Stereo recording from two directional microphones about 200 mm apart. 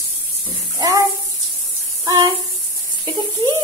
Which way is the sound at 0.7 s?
20° right (ahead or behind).